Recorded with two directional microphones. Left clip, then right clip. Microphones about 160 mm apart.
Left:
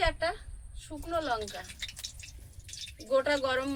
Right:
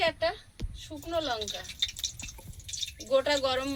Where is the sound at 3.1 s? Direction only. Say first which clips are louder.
Right 1 dB; 5° right (ahead or behind).